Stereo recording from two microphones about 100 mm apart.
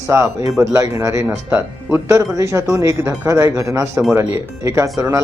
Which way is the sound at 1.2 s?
20° right (ahead or behind).